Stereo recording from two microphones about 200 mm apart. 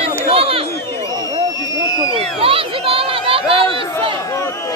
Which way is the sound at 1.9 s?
25° right (ahead or behind).